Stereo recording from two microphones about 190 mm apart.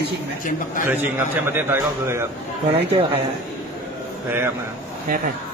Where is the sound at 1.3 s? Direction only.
10° right (ahead or behind).